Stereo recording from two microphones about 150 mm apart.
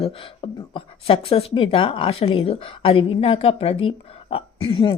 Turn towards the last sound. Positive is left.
turn(degrees=35)  # may be behind; listen again after turning